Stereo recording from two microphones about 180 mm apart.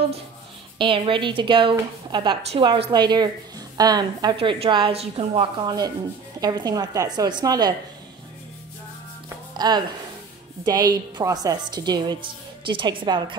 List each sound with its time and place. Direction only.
0.7 s a woman's voice: 30° right (ahead or behind)
9.6 s a woman's voice: 25° right (ahead or behind)